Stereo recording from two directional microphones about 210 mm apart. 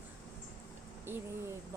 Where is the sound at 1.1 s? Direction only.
10° right (ahead or behind).